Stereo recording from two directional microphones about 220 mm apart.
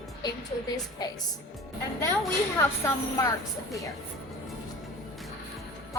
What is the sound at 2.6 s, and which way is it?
Speech, 15° left (ahead or behind).